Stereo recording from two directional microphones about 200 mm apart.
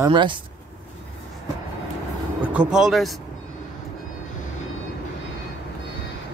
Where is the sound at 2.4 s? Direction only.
5° right (ahead or behind).